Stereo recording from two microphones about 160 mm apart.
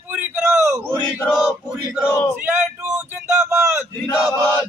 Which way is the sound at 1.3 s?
5° right (ahead or behind).